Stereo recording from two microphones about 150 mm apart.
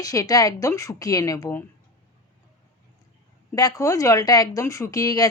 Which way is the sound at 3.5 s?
25° left (ahead or behind).